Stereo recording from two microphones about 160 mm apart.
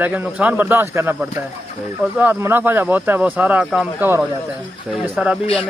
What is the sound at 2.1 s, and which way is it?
Speech, 10° right (ahead or behind).